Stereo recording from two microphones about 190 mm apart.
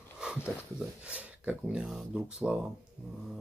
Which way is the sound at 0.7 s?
5° right (ahead or behind).